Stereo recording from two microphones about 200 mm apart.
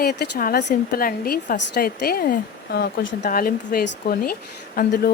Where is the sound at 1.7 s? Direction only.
55° left (ahead or behind).